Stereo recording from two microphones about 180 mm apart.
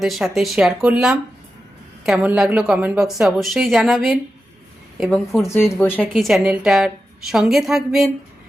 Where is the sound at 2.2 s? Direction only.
5° right (ahead or behind).